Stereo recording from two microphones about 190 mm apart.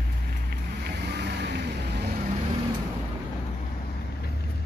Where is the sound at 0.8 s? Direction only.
60° right (ahead or behind).